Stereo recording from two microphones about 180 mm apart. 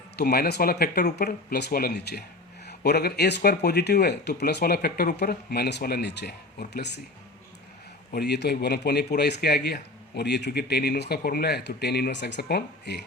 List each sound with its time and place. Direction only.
0.2 s speech: 60° left (ahead or behind)
8.1 s speech: 65° left (ahead or behind)